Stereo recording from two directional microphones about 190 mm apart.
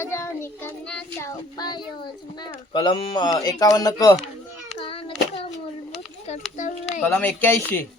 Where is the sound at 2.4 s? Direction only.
20° left (ahead or behind).